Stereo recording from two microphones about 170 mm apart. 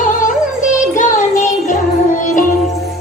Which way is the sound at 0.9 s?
50° left (ahead or behind).